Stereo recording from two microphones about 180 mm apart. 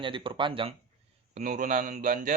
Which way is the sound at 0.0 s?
30° right (ahead or behind).